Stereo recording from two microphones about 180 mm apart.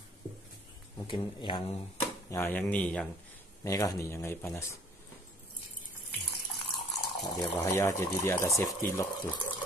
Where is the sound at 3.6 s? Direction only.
20° left (ahead or behind).